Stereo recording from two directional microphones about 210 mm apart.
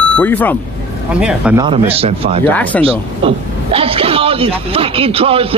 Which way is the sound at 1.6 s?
25° right (ahead or behind).